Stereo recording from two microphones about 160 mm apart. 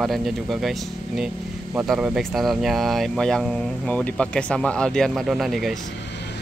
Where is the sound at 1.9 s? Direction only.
Centre (ahead or behind).